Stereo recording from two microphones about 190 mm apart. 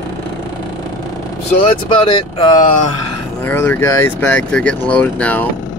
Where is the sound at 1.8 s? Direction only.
30° left (ahead or behind).